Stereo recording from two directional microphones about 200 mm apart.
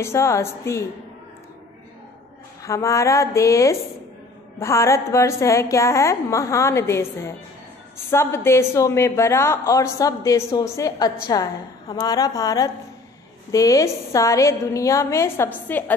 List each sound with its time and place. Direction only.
0.0 s a woman's voice: 15° left (ahead or behind)
2.6 s a woman's voice: 15° left (ahead or behind)